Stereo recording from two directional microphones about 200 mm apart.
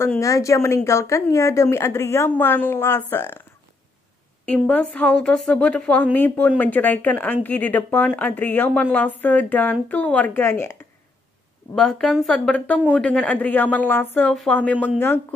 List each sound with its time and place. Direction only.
0.0 s speech: 15° left (ahead or behind)
4.6 s speech: 5° left (ahead or behind)